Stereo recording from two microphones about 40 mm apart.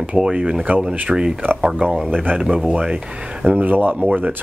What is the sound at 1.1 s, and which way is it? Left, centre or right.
Speech, centre.